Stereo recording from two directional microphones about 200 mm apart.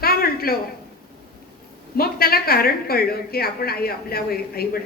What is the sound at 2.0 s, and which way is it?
A woman's voice, 50° left (ahead or behind).